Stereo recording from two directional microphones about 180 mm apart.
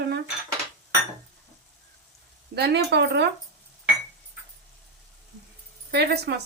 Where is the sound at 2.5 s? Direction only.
65° right (ahead or behind).